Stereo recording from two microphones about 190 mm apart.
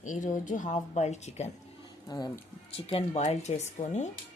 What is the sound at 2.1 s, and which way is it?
Speech, 20° left (ahead or behind).